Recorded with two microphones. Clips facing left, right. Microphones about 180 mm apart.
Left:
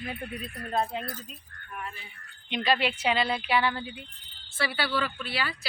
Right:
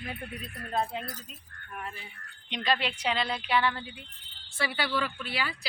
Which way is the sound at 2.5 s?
5° left (ahead or behind).